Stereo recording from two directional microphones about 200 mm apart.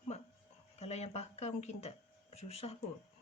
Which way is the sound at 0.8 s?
30° left (ahead or behind).